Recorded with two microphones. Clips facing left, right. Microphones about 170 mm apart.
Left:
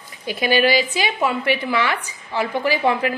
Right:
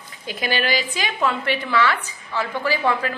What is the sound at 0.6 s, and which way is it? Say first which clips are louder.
Speech: left 6 dB; 45° right (ahead or behind).